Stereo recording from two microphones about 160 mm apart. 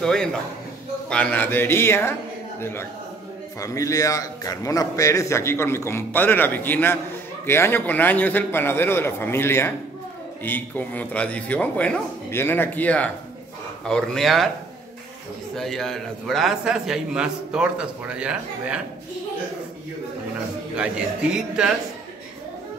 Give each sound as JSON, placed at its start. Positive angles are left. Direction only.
{"t": 0.0, "sound": "a man's voice", "side_deg": 5}
{"t": 15.5, "sound": "a man's voice", "side_deg": 0}
{"t": 20.7, "sound": "a man's voice", "side_deg": -5}